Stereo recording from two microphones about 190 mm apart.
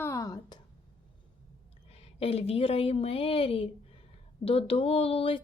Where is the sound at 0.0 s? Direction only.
15° left (ahead or behind).